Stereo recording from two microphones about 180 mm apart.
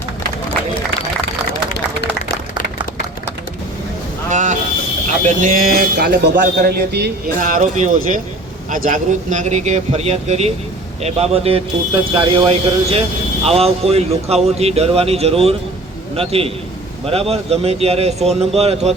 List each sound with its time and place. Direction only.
4.3 s music: 45° right (ahead or behind)
5.2 s a man's voice: 50° right (ahead or behind); by 7.1 s 65° right (ahead or behind)
7.3 s a man's voice: 50° right (ahead or behind)